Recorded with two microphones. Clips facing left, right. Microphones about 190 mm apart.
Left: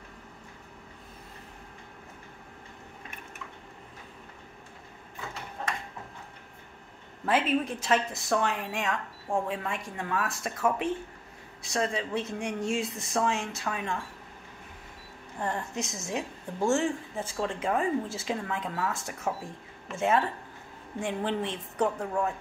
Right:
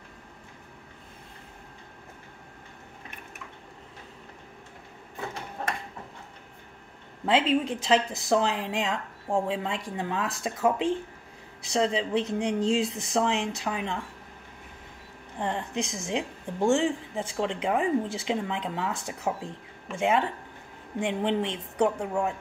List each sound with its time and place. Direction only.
7.2 s speech: 25° right (ahead or behind)
15.3 s a woman's voice: 20° right (ahead or behind)